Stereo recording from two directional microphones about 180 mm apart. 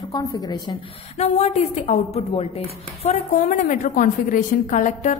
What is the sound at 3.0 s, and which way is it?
A woman's voice, 45° left (ahead or behind).